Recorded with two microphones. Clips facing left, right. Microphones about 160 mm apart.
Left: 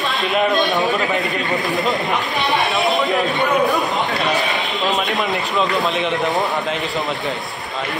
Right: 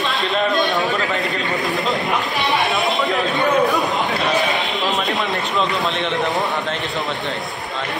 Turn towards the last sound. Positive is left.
turn(degrees=0)  # may be behind; listen again after turning